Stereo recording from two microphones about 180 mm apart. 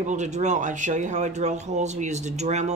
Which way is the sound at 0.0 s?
40° right (ahead or behind).